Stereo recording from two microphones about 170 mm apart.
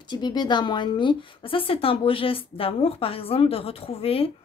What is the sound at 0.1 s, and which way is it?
A woman's voice, 25° left (ahead or behind).